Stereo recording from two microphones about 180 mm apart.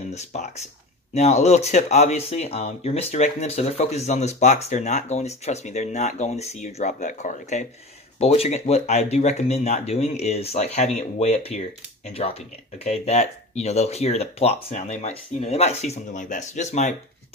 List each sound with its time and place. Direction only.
0.1 s speech: 40° left (ahead or behind)